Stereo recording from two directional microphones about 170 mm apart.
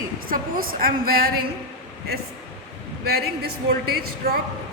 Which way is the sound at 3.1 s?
65° right (ahead or behind).